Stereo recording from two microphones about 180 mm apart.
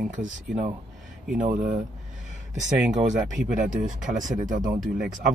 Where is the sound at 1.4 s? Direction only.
45° right (ahead or behind).